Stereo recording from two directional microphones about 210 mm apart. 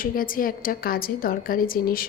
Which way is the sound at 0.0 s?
40° left (ahead or behind).